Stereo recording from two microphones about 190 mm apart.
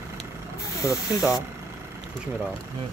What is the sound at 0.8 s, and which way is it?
Speech, 15° left (ahead or behind).